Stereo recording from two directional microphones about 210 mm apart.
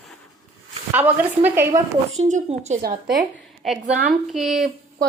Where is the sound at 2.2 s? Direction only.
35° right (ahead or behind).